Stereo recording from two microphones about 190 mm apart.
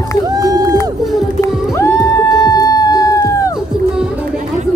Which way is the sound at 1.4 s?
15° left (ahead or behind).